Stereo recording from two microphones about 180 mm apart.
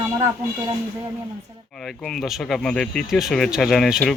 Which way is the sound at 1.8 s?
Centre (ahead or behind).